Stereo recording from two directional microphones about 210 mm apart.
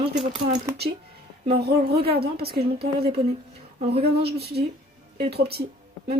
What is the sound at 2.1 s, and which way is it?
Speech, 50° right (ahead or behind).